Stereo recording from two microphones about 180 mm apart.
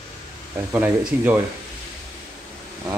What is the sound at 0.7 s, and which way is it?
Speech, 10° right (ahead or behind).